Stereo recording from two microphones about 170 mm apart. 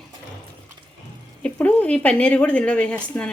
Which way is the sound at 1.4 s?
10° left (ahead or behind).